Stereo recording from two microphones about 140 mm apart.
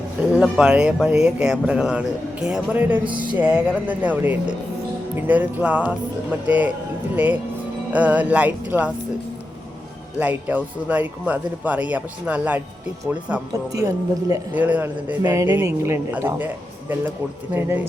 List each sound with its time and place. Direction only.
0.3 s speech: 5° right (ahead or behind)
7.2 s speech: 10° right (ahead or behind)
10.2 s speech: 10° right (ahead or behind)
13.5 s a woman's voice: 25° right (ahead or behind)
14.5 s speech: 10° right (ahead or behind)
17.5 s speech: 15° right (ahead or behind)